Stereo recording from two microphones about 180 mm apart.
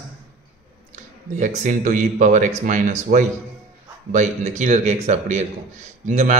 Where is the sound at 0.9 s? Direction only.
45° right (ahead or behind).